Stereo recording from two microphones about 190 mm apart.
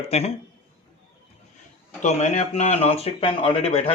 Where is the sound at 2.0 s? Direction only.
35° left (ahead or behind).